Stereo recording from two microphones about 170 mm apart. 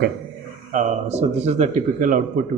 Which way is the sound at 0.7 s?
40° right (ahead or behind).